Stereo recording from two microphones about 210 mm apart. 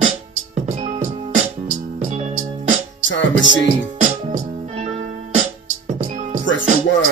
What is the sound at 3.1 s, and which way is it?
Music, 60° left (ahead or behind).